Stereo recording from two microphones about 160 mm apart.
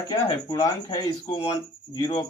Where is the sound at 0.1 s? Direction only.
25° left (ahead or behind).